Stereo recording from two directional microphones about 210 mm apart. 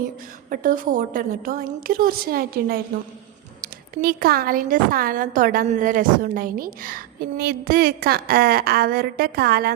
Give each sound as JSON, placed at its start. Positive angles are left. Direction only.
{"t": 0.5, "sound": "a woman's voice", "side_deg": -40}